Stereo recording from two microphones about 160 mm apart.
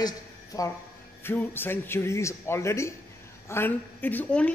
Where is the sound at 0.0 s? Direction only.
20° left (ahead or behind).